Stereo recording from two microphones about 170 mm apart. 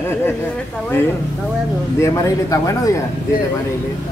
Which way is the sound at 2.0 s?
20° left (ahead or behind).